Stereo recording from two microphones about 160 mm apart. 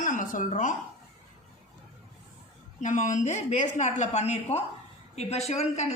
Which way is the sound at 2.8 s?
50° left (ahead or behind).